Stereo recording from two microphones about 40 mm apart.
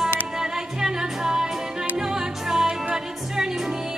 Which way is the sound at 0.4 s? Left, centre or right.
Centre.